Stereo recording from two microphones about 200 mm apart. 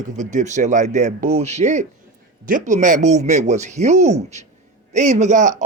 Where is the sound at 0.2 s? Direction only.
40° right (ahead or behind).